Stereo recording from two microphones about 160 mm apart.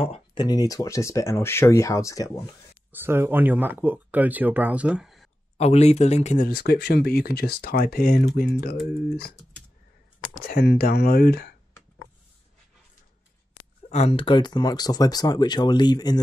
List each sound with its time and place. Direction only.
0.0 s speech: 35° left (ahead or behind)
2.9 s speech: 15° right (ahead or behind)
5.6 s speech: 40° left (ahead or behind); by 8.3 s 70° left (ahead or behind)
10.4 s speech: 80° left
13.8 s speech: 45° left (ahead or behind); by 16.2 s 25° left (ahead or behind)